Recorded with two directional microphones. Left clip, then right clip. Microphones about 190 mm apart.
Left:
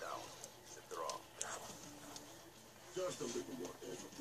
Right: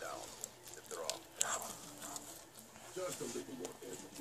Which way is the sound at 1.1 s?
40° right (ahead or behind).